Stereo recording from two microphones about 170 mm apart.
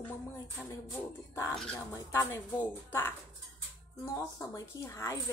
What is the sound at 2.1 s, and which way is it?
Speech, 15° left (ahead or behind).